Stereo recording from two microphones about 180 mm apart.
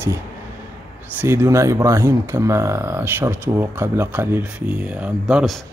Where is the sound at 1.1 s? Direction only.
10° right (ahead or behind).